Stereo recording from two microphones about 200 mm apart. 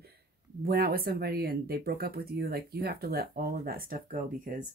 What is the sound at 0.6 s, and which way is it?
Speech, 50° right (ahead or behind).